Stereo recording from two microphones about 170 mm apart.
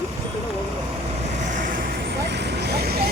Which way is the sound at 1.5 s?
50° right (ahead or behind).